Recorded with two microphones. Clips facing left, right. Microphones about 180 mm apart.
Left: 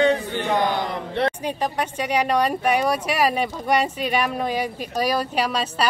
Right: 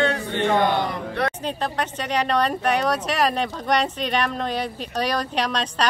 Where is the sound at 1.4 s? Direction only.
10° left (ahead or behind).